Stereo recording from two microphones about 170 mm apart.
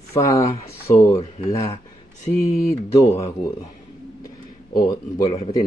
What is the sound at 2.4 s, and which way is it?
Speech, 20° left (ahead or behind).